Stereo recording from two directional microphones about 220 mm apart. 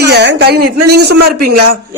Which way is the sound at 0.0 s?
50° right (ahead or behind).